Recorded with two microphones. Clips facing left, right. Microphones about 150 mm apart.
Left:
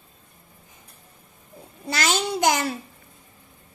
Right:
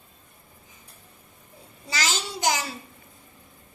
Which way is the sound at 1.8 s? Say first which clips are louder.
Left 6 dB; 55° left (ahead or behind).